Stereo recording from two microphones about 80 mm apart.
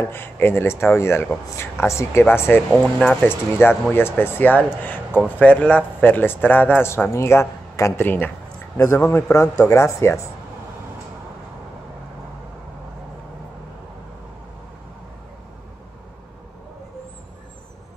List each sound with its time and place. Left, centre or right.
0.0 s speech: left
2.7 s speech: centre
3.3 s a man's voice: left
7.1 s speech: left
8.0 s a man's voice: left
8.7 s speech: left